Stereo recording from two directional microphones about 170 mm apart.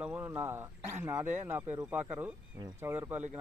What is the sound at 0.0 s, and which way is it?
Speech, 10° right (ahead or behind).